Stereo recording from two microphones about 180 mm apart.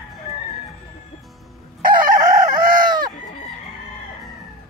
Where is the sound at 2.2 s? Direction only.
25° right (ahead or behind).